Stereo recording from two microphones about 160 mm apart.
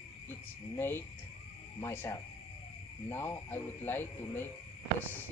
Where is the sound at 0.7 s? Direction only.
15° left (ahead or behind).